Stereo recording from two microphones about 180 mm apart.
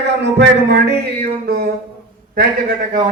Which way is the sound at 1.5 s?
60° right (ahead or behind).